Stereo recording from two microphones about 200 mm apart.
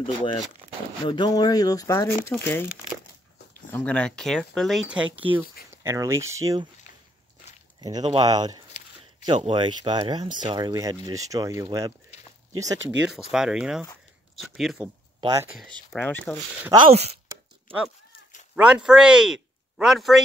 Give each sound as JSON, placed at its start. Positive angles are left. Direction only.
{"t": 0.0, "sound": "speech", "side_deg": 25}
{"t": 0.6, "sound": "a sound", "side_deg": -35}
{"t": 1.0, "sound": "speech", "side_deg": 20}
{"t": 3.7, "sound": "speech", "side_deg": 5}
{"t": 7.8, "sound": "speech", "side_deg": -20}
{"t": 12.7, "sound": "speech", "side_deg": -65}
{"t": 13.3, "sound": "speech", "side_deg": -5}
{"t": 16.7, "sound": "speech", "side_deg": -30}
{"t": 18.6, "sound": "speech", "side_deg": -5}